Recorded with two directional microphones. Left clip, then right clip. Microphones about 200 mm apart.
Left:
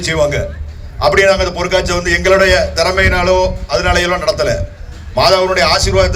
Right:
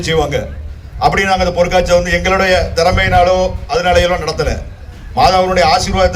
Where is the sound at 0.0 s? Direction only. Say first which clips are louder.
Left 1 dB; 35° left (ahead or behind).